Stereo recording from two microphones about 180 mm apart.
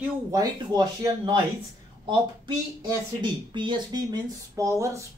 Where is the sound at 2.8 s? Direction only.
25° right (ahead or behind).